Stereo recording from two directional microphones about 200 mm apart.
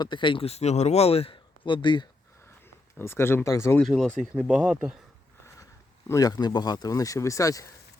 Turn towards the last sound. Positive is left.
turn(degrees=15)  # may be behind; listen again after turning